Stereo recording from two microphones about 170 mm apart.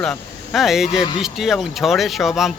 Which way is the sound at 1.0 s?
25° left (ahead or behind).